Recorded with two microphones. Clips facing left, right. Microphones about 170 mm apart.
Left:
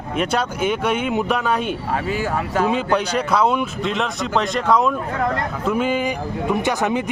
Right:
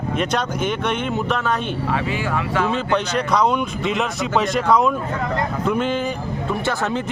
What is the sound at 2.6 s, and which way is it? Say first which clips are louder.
Speech: left 1 dB; 10° left (ahead or behind).